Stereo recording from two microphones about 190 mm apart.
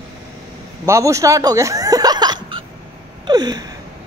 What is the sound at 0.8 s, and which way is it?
Speech, 15° right (ahead or behind).